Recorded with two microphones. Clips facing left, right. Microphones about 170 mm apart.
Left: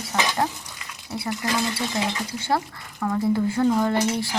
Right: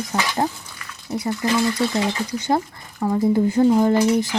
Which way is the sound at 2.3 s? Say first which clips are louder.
Right 3 dB; 20° right (ahead or behind).